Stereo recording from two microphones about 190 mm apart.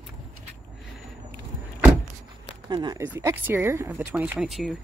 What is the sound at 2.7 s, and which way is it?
Speech, 20° right (ahead or behind).